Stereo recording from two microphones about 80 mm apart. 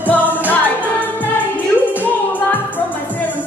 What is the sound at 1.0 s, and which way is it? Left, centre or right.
Music, left.